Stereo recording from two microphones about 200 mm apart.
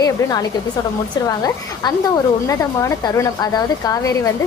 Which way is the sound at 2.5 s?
15° left (ahead or behind).